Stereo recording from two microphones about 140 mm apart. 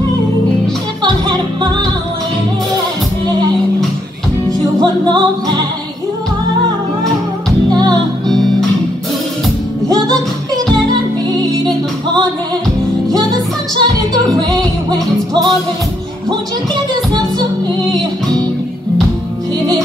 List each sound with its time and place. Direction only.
1.0 s music: 30° right (ahead or behind)
4.5 s music: 30° right (ahead or behind)
8.3 s music: 5° left (ahead or behind)
9.8 s music: 25° right (ahead or behind)
13.7 s music: 30° right (ahead or behind)